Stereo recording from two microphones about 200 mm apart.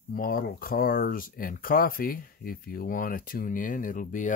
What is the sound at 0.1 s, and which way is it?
Speech, 45° left (ahead or behind).